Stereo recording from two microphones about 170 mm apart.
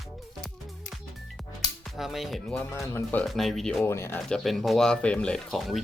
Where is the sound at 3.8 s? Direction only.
15° left (ahead or behind).